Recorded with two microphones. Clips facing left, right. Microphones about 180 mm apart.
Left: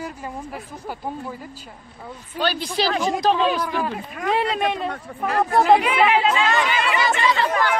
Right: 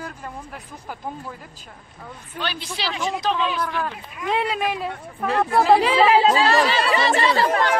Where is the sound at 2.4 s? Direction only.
40° left (ahead or behind).